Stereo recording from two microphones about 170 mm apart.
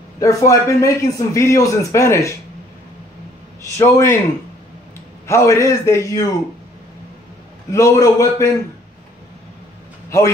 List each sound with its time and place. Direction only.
0.2 s a man's voice: 20° left (ahead or behind)
3.7 s a man's voice: 15° left (ahead or behind)
5.2 s a man's voice: 15° left (ahead or behind)
7.7 s a man's voice: 20° left (ahead or behind)
10.0 s speech: 15° left (ahead or behind)